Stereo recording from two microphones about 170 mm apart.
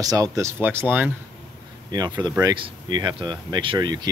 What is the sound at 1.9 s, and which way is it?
Speech, 25° right (ahead or behind).